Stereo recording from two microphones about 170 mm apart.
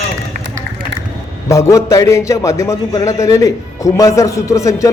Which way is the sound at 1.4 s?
20° left (ahead or behind).